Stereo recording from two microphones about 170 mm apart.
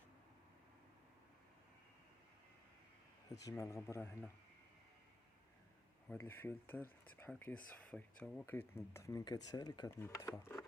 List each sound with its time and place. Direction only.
3.4 s speech: 15° left (ahead or behind)
6.1 s speech: 15° left (ahead or behind)